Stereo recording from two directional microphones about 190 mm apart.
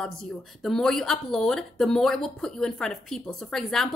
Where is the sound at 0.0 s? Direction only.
5° left (ahead or behind).